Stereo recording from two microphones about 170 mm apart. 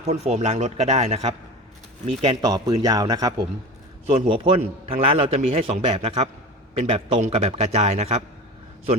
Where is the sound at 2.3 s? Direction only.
25° right (ahead or behind).